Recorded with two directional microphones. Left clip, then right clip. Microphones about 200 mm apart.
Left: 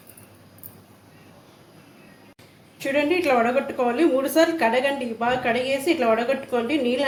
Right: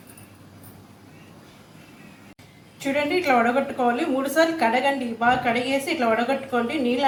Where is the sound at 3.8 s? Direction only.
30° left (ahead or behind).